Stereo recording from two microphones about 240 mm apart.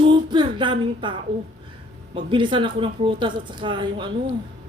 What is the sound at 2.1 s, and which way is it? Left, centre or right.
Speech, right.